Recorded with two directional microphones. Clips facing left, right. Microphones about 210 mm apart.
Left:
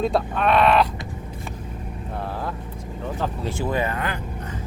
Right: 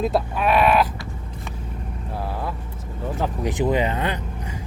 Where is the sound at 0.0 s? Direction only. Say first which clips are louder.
Even; 5° right (ahead or behind).